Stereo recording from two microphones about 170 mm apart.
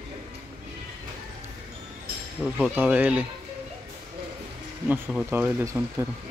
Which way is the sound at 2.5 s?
10° right (ahead or behind).